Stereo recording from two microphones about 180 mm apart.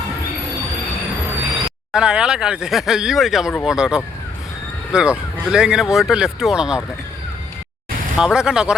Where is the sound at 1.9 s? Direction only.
5° right (ahead or behind).